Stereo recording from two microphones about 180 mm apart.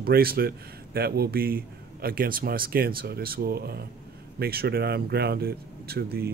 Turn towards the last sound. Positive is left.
turn(degrees=-60)  # may be behind; listen again after turning